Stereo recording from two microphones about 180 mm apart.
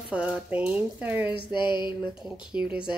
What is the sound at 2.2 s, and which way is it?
Speech, 5° right (ahead or behind).